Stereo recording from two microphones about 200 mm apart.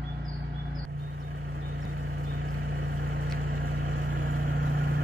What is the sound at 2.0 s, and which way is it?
Vehicle, 80° right.